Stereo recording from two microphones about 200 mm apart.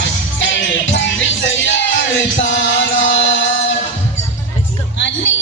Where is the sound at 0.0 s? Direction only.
65° left (ahead or behind).